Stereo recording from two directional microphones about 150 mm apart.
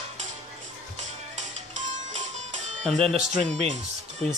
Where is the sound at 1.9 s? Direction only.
50° right (ahead or behind).